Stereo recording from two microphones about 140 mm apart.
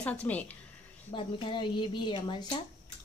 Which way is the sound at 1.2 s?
35° left (ahead or behind).